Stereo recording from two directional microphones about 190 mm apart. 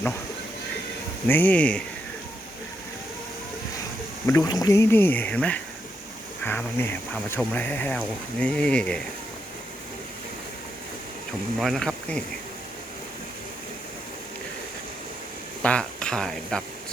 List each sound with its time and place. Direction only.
1.3 s speech: 10° left (ahead or behind)
4.3 s speech: 15° left (ahead or behind)
11.6 s speech: centre (ahead or behind)
15.6 s speech: 5° left (ahead or behind)